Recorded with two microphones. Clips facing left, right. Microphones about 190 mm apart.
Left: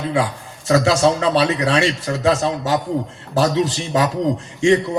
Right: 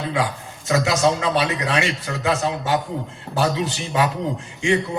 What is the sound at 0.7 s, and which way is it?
A man's voice, 35° left (ahead or behind).